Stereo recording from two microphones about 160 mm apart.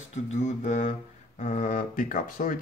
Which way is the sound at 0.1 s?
45° left (ahead or behind).